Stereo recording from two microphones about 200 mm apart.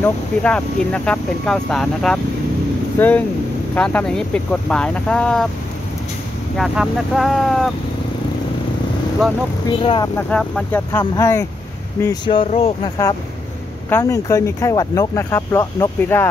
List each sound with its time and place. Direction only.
0.0 s speech: 5° left (ahead or behind)
6.5 s speech: centre (ahead or behind)
10.1 s speech: 5° left (ahead or behind)